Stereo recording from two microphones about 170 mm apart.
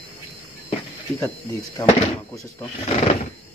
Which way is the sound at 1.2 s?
20° left (ahead or behind).